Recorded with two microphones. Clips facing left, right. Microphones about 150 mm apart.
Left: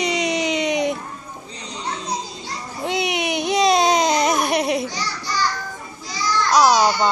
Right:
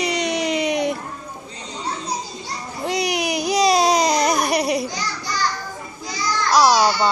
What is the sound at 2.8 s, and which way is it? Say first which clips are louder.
Baby cry: even; centre (ahead or behind).